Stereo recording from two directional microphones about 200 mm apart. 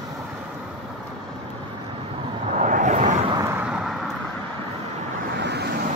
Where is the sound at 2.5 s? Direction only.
40° right (ahead or behind).